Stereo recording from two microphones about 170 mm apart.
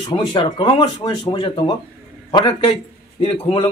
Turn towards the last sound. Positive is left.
turn(degrees=35)  # may be behind; listen again after turning